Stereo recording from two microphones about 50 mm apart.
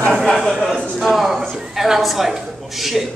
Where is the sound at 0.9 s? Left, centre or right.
Centre.